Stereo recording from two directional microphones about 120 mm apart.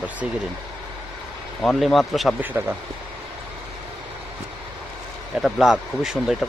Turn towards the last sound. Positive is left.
turn(degrees=0)  # may be behind; listen again after turning